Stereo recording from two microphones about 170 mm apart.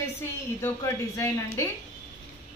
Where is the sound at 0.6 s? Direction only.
15° left (ahead or behind).